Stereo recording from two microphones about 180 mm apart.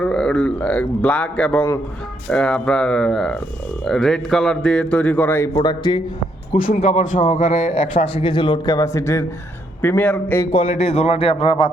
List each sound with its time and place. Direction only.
0.0 s speech: 5° left (ahead or behind)
5.5 s a man's voice: 25° left (ahead or behind)
6.7 s a man's voice: 40° left (ahead or behind); by 10.5 s 10° left (ahead or behind)
10.6 s a man's voice: 35° left (ahead or behind)